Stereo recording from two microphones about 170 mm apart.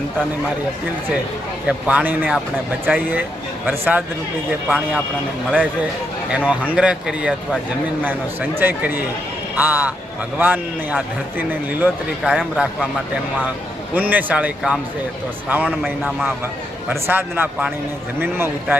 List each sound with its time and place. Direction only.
1.6 s a man's voice: 10° right (ahead or behind)
6.3 s a man's voice: 10° right (ahead or behind)
13.9 s a man's voice: 10° right (ahead or behind)